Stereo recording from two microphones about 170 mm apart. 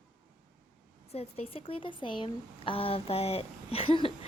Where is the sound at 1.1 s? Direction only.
35° left (ahead or behind).